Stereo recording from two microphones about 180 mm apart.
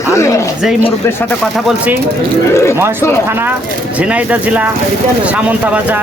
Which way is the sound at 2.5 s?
15° left (ahead or behind).